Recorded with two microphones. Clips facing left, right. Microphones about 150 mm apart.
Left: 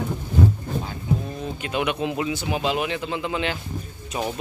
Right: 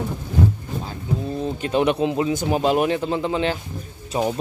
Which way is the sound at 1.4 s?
35° right (ahead or behind).